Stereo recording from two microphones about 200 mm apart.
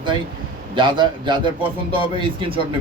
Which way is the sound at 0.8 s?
25° right (ahead or behind).